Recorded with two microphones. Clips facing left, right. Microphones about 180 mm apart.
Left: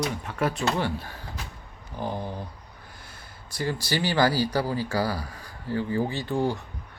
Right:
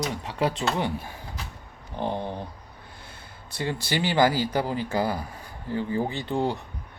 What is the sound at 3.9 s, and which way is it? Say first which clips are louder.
Speech: right 1 dB; 20° right (ahead or behind).